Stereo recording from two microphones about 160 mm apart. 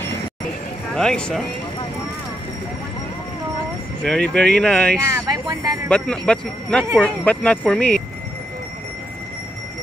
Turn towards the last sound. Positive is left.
turn(degrees=5)  # may be behind; listen again after turning